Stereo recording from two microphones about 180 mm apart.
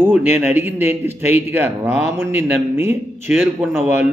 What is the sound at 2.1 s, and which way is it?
A man's voice, 15° right (ahead or behind).